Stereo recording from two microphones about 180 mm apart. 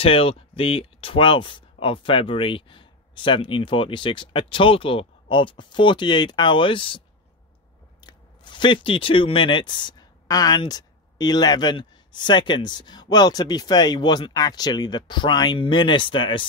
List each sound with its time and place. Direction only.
0.0 s speech: 30° left (ahead or behind)
8.0 s speech: 25° left (ahead or behind)